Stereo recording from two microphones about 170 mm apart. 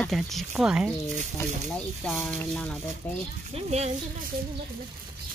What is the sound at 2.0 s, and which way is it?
Speech, centre (ahead or behind).